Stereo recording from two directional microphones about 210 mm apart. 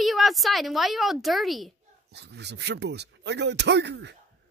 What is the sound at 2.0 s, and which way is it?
Speech, 55° right (ahead or behind).